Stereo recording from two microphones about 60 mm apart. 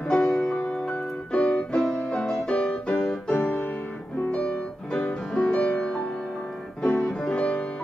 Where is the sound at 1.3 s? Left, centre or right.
Centre.